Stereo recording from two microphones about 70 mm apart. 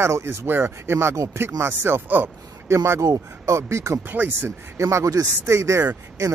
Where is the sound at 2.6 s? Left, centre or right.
Right.